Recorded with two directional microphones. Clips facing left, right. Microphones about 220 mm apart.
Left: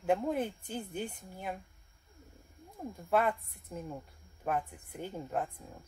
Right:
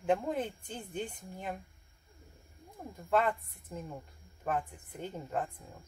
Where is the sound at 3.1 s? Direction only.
10° left (ahead or behind).